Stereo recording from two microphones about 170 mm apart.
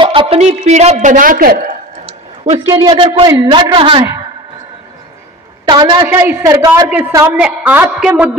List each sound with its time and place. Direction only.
0.0 s a man's voice: 30° right (ahead or behind); by 1.8 s 60° right (ahead or behind)
2.6 s a woman's voice: 20° right (ahead or behind)
3.0 s a man's voice: 30° right (ahead or behind)
5.7 s a woman's voice: 25° right (ahead or behind); by 8.3 s 10° right (ahead or behind)